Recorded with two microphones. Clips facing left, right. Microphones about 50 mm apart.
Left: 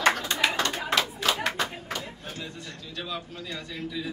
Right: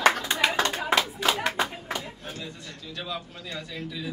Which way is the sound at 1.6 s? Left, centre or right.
Centre.